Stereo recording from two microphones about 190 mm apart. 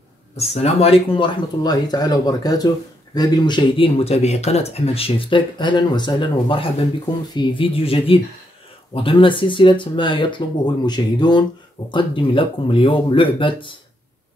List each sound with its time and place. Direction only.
0.4 s speech: 35° left (ahead or behind)